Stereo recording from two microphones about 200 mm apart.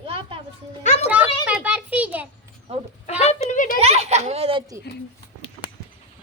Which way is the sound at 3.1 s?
35° left (ahead or behind).